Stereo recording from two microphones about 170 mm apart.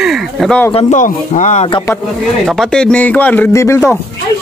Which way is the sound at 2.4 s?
Centre (ahead or behind).